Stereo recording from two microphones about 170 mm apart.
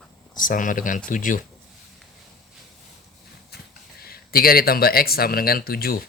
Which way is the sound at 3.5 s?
70° left (ahead or behind).